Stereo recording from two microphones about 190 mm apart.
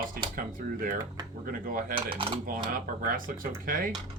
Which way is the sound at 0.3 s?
45° right (ahead or behind).